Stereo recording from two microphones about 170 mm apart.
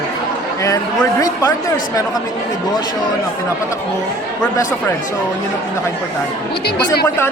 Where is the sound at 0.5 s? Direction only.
20° left (ahead or behind).